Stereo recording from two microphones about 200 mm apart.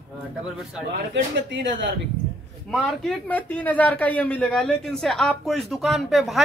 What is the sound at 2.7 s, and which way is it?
A man's voice, centre (ahead or behind).